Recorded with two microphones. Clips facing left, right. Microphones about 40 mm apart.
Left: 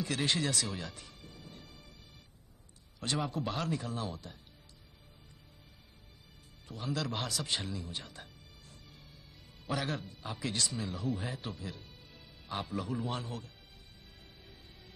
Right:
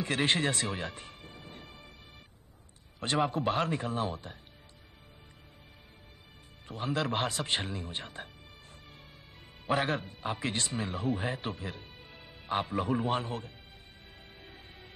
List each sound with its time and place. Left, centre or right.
0.0 s music: right
3.0 s speech: right
6.7 s speech: right
9.7 s speech: right
14.4 s music: right